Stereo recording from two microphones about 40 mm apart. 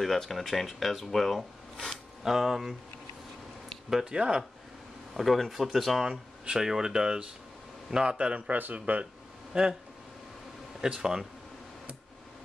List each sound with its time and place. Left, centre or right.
0.0 s speech: centre
4.0 s a man's voice: right
5.1 s speech: centre
6.0 s a man's voice: centre
8.7 s speech: right
9.5 s speech: centre
10.8 s speech: centre